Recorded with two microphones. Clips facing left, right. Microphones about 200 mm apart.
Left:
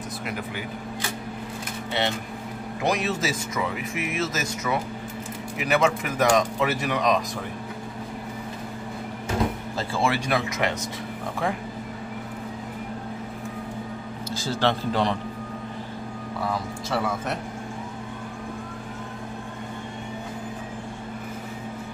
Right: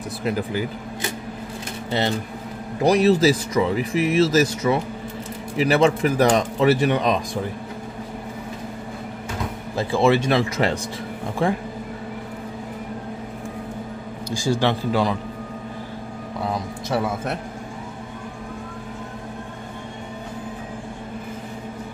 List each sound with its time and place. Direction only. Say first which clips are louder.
0.2 s speech: right 11 dB; 35° right (ahead or behind)
1.9 s speech: right 4 dB; 40° right (ahead or behind)
9.8 s speech: right 8 dB; 20° right (ahead or behind)
14.3 s a man's voice: right 4 dB; 15° right (ahead or behind)
16.4 s speech: right 3 dB; 25° right (ahead or behind)